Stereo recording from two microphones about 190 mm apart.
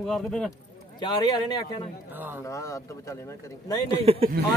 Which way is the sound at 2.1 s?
10° right (ahead or behind).